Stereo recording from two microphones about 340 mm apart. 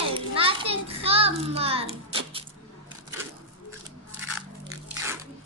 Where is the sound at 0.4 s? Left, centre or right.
Centre.